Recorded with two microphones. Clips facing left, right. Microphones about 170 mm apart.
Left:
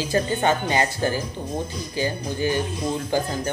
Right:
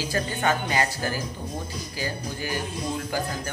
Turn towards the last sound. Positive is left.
turn(degrees=25)  # may be behind; listen again after turning